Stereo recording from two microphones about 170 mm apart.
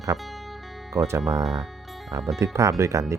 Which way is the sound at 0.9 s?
15° right (ahead or behind).